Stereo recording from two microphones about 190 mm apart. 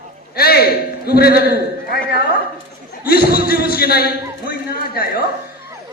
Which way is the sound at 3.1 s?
55° left (ahead or behind).